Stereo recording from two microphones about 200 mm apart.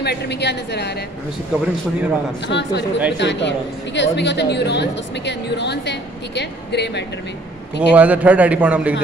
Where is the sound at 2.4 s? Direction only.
60° left (ahead or behind).